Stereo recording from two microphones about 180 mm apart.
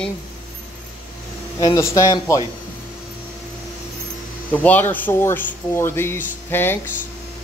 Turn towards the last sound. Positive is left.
turn(degrees=10)  # may be behind; listen again after turning